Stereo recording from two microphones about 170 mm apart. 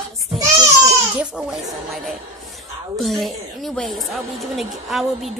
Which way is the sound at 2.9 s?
Centre (ahead or behind).